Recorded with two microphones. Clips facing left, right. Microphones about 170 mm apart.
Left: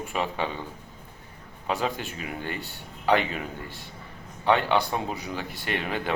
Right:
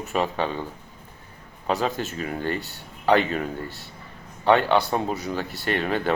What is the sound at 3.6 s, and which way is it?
Speech, 15° left (ahead or behind).